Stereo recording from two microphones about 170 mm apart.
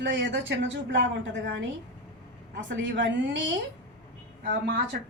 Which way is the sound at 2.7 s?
90° right.